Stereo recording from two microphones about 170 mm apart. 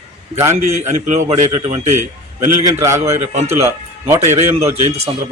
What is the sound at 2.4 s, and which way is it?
A man's voice, 15° right (ahead or behind).